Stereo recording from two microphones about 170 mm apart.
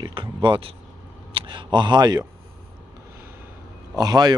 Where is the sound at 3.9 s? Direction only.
25° right (ahead or behind).